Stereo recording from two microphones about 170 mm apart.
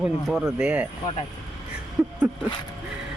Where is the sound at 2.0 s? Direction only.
5° right (ahead or behind).